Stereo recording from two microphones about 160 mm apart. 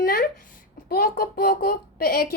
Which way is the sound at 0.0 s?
65° left (ahead or behind).